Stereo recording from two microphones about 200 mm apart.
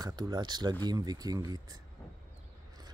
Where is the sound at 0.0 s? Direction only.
20° right (ahead or behind).